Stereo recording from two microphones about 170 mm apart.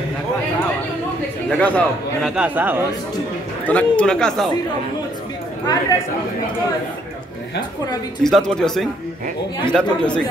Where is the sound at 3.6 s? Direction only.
5° left (ahead or behind).